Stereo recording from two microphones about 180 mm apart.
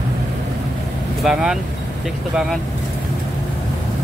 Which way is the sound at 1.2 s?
5° right (ahead or behind).